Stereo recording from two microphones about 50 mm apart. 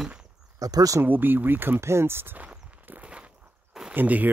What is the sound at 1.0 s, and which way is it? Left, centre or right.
Speech, right.